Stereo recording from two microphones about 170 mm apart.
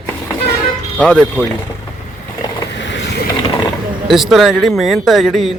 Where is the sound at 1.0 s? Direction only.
5° left (ahead or behind).